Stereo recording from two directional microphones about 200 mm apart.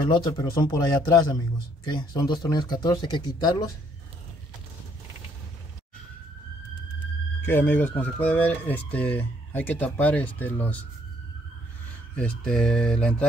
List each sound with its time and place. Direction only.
0.0 s speech: 20° left (ahead or behind)
7.4 s speech: 10° left (ahead or behind)
12.2 s speech: 5° left (ahead or behind)